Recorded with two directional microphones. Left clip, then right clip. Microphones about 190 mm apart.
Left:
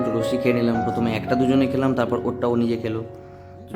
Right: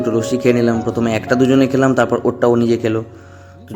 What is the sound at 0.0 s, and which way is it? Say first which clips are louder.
Speech: right 5 dB; 20° right (ahead or behind).